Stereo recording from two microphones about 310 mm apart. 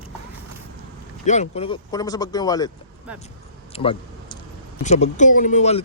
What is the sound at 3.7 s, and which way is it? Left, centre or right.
Speech, centre.